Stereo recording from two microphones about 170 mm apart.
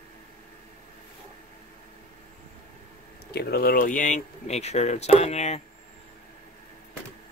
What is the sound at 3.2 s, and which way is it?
Speech, 70° left (ahead or behind).